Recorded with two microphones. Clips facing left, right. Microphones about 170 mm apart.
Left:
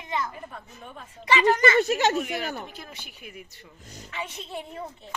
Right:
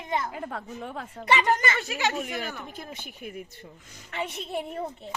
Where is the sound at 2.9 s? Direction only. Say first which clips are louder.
Right 5 dB; 50° right (ahead or behind).